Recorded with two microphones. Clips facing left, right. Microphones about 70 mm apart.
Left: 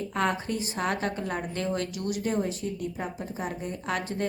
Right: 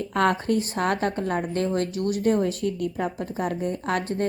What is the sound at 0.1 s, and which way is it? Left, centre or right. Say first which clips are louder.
A woman's voice: right 7 dB; right.